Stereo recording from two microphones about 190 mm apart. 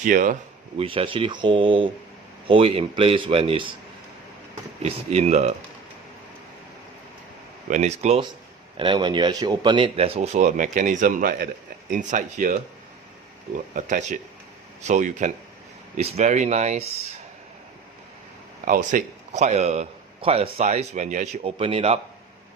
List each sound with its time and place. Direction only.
0.0 s speech: 45° right (ahead or behind)
0.8 s speech: 30° right (ahead or behind)
4.8 s a man's voice: 35° right (ahead or behind)
7.7 s a man's voice: 35° right (ahead or behind)
13.7 s a man's voice: 40° right (ahead or behind)
18.6 s a man's voice: 45° right (ahead or behind)